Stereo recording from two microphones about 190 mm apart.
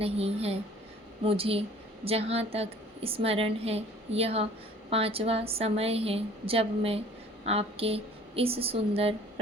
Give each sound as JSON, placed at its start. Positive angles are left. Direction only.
{"t": 0.0, "sound": "a woman's voice", "side_deg": -30}